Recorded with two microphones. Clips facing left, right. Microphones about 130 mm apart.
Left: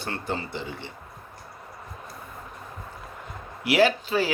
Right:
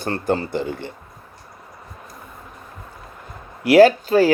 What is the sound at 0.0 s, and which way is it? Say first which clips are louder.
Speech: right 9 dB; 45° right (ahead or behind).